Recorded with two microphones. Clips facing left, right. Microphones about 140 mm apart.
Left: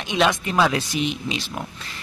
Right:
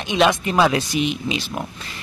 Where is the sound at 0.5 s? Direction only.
15° right (ahead or behind).